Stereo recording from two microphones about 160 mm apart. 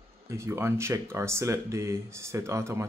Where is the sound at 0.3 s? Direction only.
15° right (ahead or behind).